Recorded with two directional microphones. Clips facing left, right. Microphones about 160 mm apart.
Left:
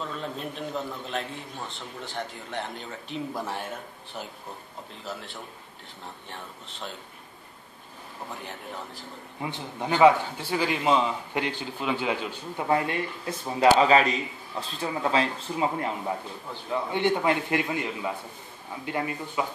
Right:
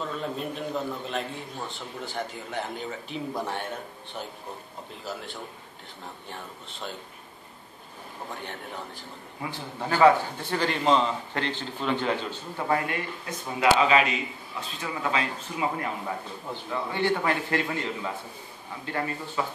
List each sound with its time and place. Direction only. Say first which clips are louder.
0.0 s a man's voice: right 2 dB; centre (ahead or behind)
5.0 s a man's voice: right 2 dB; centre (ahead or behind)
8.3 s a man's voice: right 1 dB; centre (ahead or behind)
9.4 s a man's voice: left 1 dB; 20° left (ahead or behind)
10.5 s a man's voice: even; 5° left (ahead or behind)
12.6 s a man's voice: left 2 dB; 25° left (ahead or behind)
16.7 s a man's voice: left 2 dB; 20° left (ahead or behind)